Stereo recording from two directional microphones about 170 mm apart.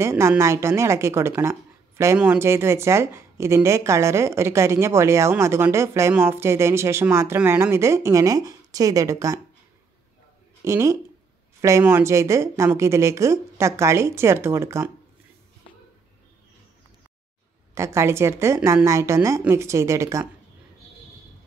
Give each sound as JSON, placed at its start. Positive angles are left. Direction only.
{"t": 0.0, "sound": "a woman's voice", "side_deg": -15}
{"t": 10.6, "sound": "a woman's voice", "side_deg": -15}
{"t": 17.7, "sound": "a woman's voice", "side_deg": -15}